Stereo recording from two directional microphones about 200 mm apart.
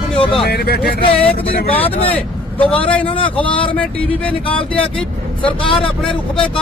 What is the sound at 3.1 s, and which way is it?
Speech, 25° left (ahead or behind).